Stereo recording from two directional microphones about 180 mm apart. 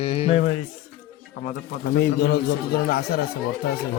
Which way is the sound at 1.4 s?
70° left (ahead or behind).